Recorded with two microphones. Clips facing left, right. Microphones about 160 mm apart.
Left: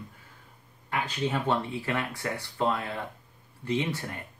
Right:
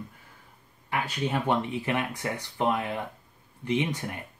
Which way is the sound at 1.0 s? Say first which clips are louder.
Right 1 dB; 10° right (ahead or behind).